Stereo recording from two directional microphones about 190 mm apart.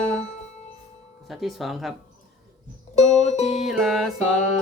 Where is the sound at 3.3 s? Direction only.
35° left (ahead or behind).